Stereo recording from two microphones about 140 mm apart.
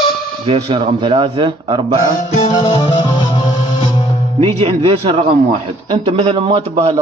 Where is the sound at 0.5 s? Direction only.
40° right (ahead or behind).